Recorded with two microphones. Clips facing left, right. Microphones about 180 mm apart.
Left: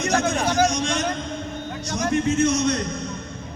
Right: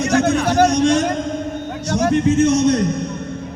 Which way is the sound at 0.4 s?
60° right (ahead or behind).